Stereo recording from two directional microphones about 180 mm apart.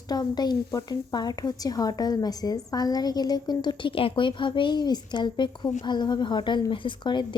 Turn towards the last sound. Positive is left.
turn(degrees=25)  # may be behind; listen again after turning